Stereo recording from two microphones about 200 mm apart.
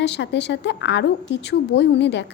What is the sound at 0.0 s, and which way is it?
Speech, 60° left (ahead or behind).